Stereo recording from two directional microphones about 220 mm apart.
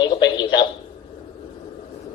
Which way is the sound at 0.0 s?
20° left (ahead or behind).